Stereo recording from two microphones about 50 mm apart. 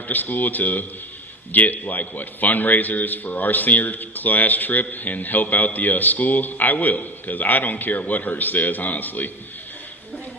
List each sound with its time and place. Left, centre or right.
0.1 s a man's voice: left